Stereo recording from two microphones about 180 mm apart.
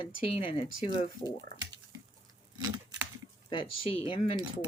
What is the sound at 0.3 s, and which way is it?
Speech, 30° left (ahead or behind).